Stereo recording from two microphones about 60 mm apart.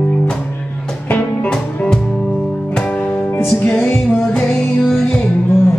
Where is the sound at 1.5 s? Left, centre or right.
Centre.